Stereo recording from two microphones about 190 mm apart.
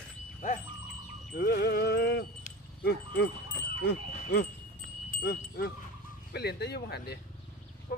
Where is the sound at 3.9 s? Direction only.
60° left (ahead or behind).